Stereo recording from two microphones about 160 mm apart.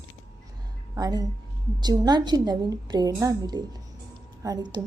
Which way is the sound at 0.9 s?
25° right (ahead or behind).